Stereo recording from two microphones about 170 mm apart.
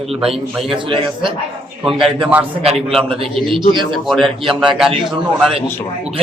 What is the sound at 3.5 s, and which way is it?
Speech, 30° right (ahead or behind).